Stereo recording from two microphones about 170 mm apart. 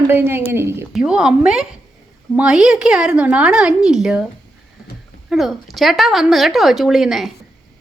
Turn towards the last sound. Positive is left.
turn(degrees=0)  # may be behind; listen again after turning